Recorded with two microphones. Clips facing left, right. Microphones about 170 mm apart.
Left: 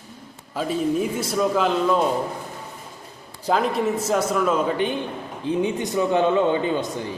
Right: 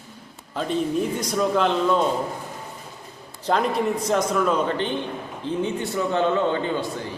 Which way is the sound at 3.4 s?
Centre (ahead or behind).